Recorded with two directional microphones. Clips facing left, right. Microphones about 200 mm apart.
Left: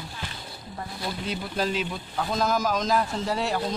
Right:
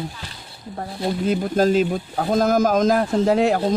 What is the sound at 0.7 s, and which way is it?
Speech, 50° right (ahead or behind).